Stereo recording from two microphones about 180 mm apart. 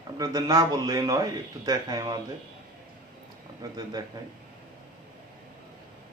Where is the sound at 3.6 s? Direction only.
20° right (ahead or behind).